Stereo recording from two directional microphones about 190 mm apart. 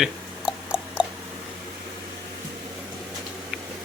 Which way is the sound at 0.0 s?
5° right (ahead or behind).